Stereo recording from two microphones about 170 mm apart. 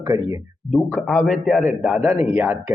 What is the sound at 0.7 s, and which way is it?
A man's voice, centre (ahead or behind).